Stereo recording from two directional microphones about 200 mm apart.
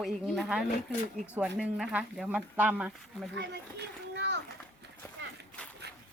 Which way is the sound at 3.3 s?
60° right (ahead or behind).